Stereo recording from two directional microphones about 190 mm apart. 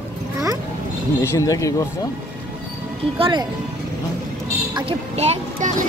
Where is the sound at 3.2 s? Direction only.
25° right (ahead or behind).